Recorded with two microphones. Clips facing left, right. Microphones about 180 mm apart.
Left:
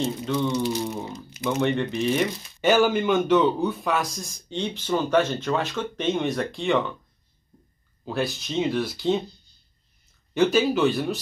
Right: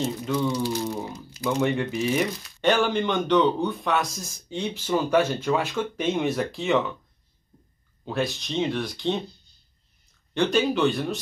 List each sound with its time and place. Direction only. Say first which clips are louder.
0.0 s a man's voice: left 1 dB; centre (ahead or behind)
0.4 s speech: left 1 dB; 20° left (ahead or behind)
1.3 s a sound: even; 20° left (ahead or behind)
1.6 s speech: left 1 dB; 5° right (ahead or behind)
2.6 s a man's voice: left 2 dB; 5° left (ahead or behind)
8.0 s a man's voice: even; centre (ahead or behind)
10.3 s a man's voice: left 2 dB; 5° left (ahead or behind)